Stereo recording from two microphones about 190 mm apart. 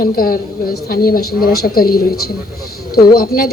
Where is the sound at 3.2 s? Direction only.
50° left (ahead or behind).